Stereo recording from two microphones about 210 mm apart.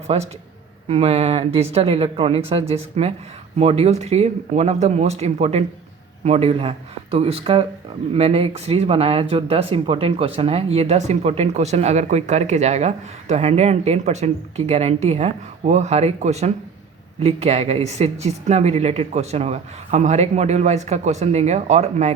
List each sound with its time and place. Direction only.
0.1 s speech: 30° right (ahead or behind)